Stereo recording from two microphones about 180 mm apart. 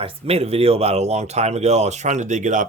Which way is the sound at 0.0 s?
35° right (ahead or behind).